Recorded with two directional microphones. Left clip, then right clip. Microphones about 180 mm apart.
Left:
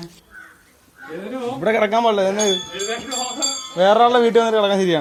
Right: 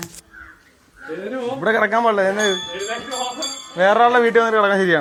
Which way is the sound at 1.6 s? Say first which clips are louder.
Even; 20° left (ahead or behind).